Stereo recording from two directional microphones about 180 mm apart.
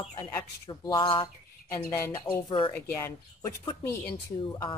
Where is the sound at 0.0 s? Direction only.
25° left (ahead or behind).